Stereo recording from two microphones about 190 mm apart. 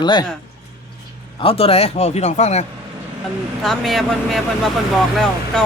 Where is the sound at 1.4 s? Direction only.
30° left (ahead or behind).